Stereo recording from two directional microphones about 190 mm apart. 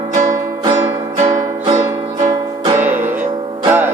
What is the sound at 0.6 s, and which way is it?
Music, 20° right (ahead or behind).